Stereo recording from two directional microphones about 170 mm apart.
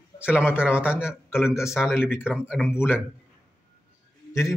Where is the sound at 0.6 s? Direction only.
5° right (ahead or behind).